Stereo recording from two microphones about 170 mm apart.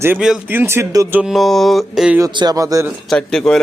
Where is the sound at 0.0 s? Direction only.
10° right (ahead or behind).